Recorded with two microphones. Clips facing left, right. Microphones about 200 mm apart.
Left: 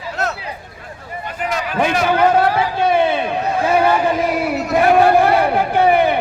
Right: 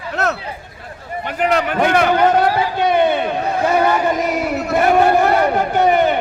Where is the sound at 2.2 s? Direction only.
5° left (ahead or behind).